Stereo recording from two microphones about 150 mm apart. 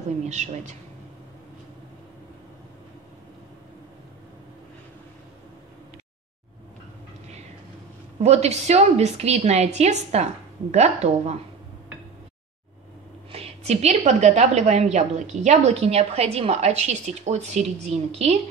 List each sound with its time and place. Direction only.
0.2 s a woman's voice: 50° right (ahead or behind)
8.2 s a woman's voice: 45° right (ahead or behind)
13.3 s a woman's voice: 45° right (ahead or behind)